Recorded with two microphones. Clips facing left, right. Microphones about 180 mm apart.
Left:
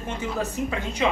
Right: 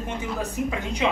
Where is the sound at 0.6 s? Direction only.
10° right (ahead or behind).